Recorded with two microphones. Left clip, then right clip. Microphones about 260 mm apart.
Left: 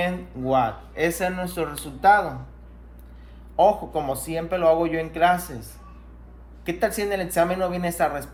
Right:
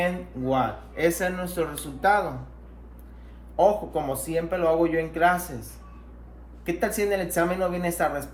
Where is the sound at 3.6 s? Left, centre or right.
Left.